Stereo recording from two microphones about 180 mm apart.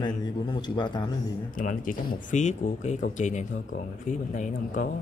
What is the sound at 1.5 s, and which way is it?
Speech, 50° left (ahead or behind).